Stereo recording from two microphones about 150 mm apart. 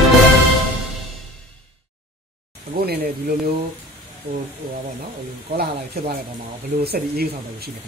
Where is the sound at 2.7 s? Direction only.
90° right.